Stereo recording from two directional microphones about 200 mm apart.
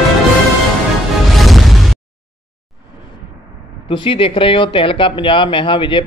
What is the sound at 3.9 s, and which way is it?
Speech, 25° left (ahead or behind).